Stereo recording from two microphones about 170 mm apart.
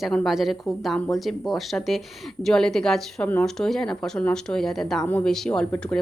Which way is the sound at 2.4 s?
Centre (ahead or behind).